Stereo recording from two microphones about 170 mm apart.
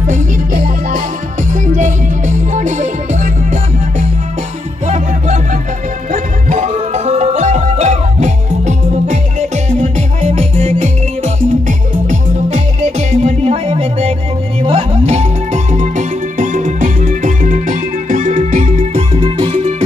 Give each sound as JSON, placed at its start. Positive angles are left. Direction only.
{"t": 0.0, "sound": "music", "side_deg": -45}
{"t": 4.8, "sound": "music", "side_deg": -45}
{"t": 19.1, "sound": "music", "side_deg": -30}